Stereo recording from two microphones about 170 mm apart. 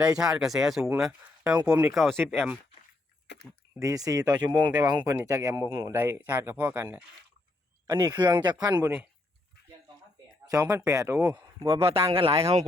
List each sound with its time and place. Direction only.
0.0 s speech: 5° right (ahead or behind)
3.3 s a sound: 90° left
3.8 s speech: 20° right (ahead or behind)
10.4 s speech: 20° right (ahead or behind)
11.8 s speech: 35° right (ahead or behind)